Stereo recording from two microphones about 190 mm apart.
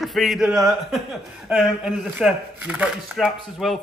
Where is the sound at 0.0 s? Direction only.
Centre (ahead or behind).